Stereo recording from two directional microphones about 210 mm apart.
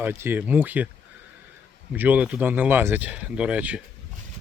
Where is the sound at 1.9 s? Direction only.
10° right (ahead or behind).